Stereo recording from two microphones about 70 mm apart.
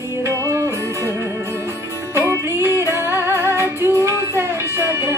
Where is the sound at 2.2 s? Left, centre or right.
Right.